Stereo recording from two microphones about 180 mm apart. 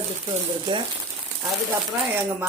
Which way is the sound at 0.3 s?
25° right (ahead or behind).